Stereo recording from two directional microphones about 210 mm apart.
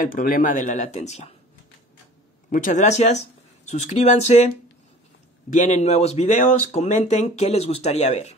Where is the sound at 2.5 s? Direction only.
40° left (ahead or behind).